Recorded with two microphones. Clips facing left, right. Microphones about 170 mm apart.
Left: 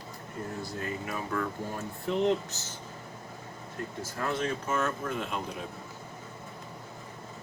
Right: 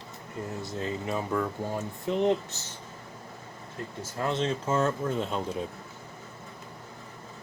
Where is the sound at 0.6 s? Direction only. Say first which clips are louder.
Right 5 dB; 20° right (ahead or behind).